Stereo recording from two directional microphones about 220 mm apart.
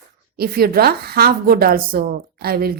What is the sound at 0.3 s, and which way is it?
A woman's voice, 45° right (ahead or behind).